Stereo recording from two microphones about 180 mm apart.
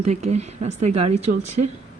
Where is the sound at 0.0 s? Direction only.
40° right (ahead or behind).